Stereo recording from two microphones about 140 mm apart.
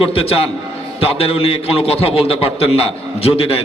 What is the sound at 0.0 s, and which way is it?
A man's voice, 40° left (ahead or behind).